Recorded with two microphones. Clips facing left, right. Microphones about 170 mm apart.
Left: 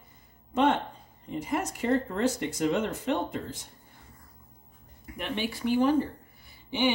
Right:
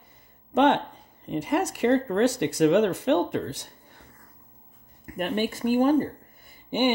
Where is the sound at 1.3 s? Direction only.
75° right (ahead or behind).